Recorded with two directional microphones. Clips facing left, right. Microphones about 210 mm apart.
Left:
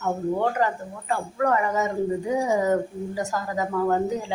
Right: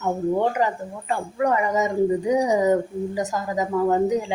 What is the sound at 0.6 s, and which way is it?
Speech, 20° right (ahead or behind).